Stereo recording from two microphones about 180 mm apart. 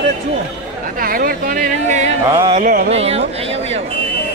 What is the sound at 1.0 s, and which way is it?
Speech, 55° right (ahead or behind).